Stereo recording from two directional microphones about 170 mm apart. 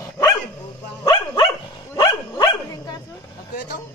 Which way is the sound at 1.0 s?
30° left (ahead or behind).